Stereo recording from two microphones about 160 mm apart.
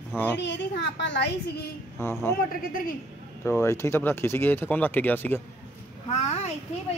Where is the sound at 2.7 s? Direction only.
60° left (ahead or behind).